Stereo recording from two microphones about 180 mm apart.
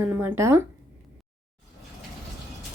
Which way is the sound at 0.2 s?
15° right (ahead or behind).